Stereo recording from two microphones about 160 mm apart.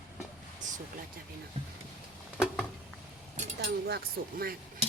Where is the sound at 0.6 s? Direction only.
50° right (ahead or behind).